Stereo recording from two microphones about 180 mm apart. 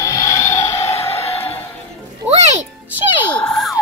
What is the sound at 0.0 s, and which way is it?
Vehicle, 15° left (ahead or behind).